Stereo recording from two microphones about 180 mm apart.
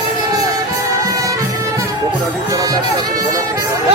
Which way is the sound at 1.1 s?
15° right (ahead or behind).